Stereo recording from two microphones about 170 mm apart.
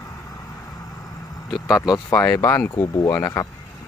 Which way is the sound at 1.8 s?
20° left (ahead or behind).